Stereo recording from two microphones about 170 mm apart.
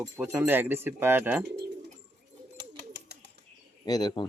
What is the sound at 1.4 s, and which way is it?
Speech, 70° right (ahead or behind).